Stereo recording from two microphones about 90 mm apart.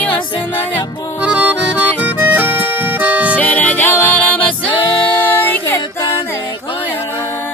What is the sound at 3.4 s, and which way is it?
Music, 20° left (ahead or behind).